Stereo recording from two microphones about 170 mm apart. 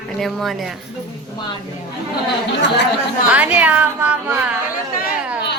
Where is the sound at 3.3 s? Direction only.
10° right (ahead or behind).